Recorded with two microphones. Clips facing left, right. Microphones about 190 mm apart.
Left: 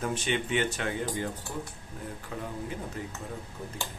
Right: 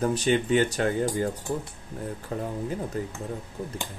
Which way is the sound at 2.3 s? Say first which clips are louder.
Right 6 dB; 40° right (ahead or behind).